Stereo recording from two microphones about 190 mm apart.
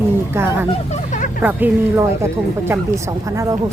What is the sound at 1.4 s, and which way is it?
Speech, 10° right (ahead or behind).